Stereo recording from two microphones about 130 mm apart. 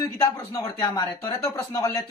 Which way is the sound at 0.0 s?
25° left (ahead or behind).